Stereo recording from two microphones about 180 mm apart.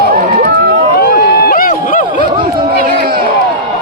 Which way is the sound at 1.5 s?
50° left (ahead or behind).